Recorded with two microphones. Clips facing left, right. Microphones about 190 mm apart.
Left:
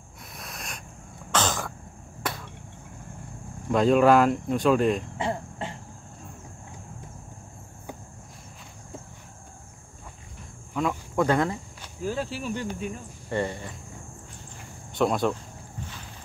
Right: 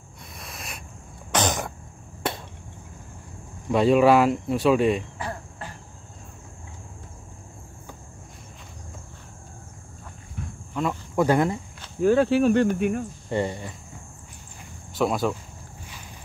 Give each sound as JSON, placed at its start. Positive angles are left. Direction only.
{"t": 0.4, "sound": "a sound", "side_deg": 0}
{"t": 1.3, "sound": "throat clearing", "side_deg": -15}
{"t": 2.2, "sound": "cricket", "side_deg": -25}
{"t": 3.7, "sound": "speech", "side_deg": -5}
{"t": 5.1, "sound": "cricket", "side_deg": 25}
{"t": 10.7, "sound": "speech", "side_deg": -5}
{"t": 12.0, "sound": "speech", "side_deg": -65}
{"t": 13.3, "sound": "speech", "side_deg": -15}
{"t": 15.0, "sound": "speech", "side_deg": 0}